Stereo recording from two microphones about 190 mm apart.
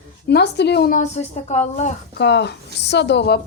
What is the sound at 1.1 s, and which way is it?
Speech, 35° left (ahead or behind).